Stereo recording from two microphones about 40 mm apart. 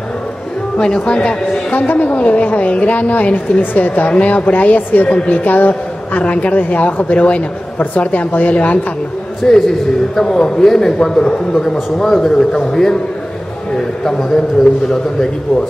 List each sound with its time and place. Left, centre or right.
0.7 s speech: left
1.7 s a woman's voice: left
6.2 s a woman's voice: left
9.5 s a man's voice: centre
12.1 s a man's voice: centre
12.4 s a man's voice: centre
14.0 s a man's voice: centre